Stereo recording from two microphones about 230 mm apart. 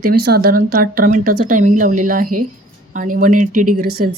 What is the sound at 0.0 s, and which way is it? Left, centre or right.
A woman's voice, right.